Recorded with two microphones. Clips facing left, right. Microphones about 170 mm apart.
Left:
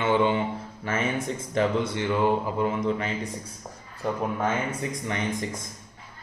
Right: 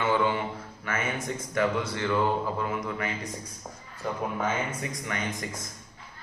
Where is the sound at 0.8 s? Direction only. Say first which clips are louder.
Left 4 dB; 25° left (ahead or behind).